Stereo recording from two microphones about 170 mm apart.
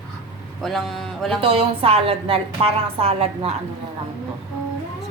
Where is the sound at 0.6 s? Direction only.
Centre (ahead or behind).